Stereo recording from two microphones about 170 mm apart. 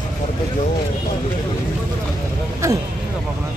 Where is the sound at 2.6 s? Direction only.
15° right (ahead or behind).